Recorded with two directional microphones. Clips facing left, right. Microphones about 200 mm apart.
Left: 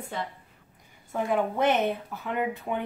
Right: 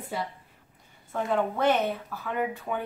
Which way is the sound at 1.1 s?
15° left (ahead or behind).